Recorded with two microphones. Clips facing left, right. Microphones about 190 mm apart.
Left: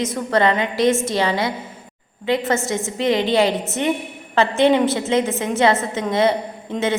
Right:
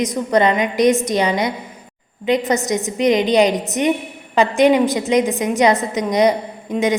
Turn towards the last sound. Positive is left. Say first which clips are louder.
# right 3 dB
turn(degrees=-15)  # may be behind; listen again after turning